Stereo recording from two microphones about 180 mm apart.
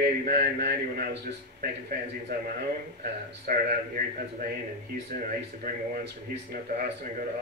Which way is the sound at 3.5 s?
55° right (ahead or behind).